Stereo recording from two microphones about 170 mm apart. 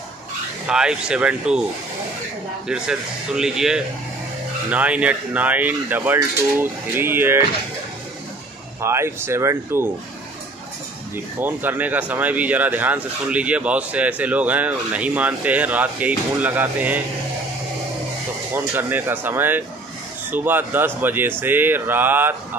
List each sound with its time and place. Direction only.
0.7 s speech: 5° right (ahead or behind)
2.7 s speech: 5° right (ahead or behind)
8.8 s speech: 15° right (ahead or behind)
11.3 s speech: 10° right (ahead or behind)
18.5 s speech: 10° right (ahead or behind)